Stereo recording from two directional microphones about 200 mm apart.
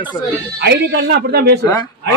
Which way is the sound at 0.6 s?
55° right (ahead or behind).